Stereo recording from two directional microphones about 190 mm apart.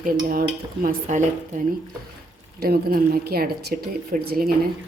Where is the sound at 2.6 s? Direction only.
50° right (ahead or behind).